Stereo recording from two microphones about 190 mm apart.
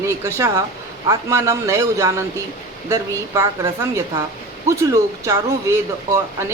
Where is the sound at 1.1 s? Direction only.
15° right (ahead or behind).